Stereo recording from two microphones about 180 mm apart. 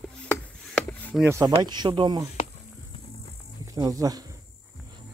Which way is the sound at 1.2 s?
15° right (ahead or behind).